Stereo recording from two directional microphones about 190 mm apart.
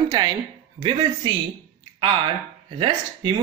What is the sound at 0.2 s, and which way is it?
Speech, 20° right (ahead or behind).